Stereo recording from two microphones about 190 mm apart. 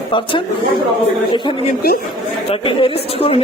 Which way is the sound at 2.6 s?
30° left (ahead or behind).